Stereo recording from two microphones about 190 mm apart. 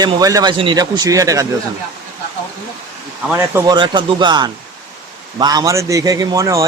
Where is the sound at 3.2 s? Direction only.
10° right (ahead or behind).